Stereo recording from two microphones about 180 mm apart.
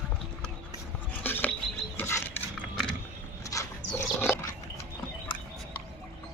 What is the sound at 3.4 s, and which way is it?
Dog, 20° left (ahead or behind).